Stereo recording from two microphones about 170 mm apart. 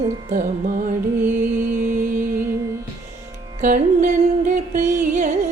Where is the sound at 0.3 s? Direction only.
50° right (ahead or behind).